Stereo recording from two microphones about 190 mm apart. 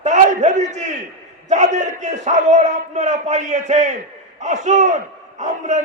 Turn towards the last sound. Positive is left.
turn(degrees=-40)  # may be behind; listen again after turning